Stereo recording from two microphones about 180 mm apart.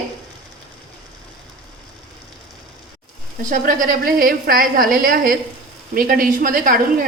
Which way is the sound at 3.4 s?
45° right (ahead or behind).